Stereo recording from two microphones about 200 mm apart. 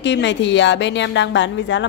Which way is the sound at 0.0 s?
60° left (ahead or behind).